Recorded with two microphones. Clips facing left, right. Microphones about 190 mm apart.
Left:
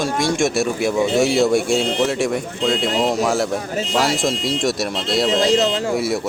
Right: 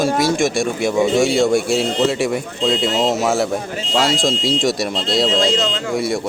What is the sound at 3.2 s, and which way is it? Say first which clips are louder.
Speech: right 1 dB; centre (ahead or behind).